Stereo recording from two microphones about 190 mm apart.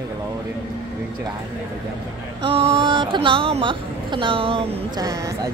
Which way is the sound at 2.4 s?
30° right (ahead or behind).